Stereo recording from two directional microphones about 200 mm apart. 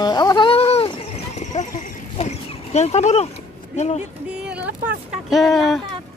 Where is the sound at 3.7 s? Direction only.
35° left (ahead or behind).